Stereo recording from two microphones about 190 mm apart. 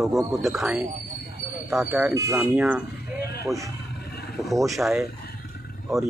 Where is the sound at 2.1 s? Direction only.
15° right (ahead or behind).